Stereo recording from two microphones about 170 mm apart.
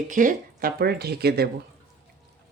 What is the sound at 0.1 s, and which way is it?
Speech, 50° right (ahead or behind).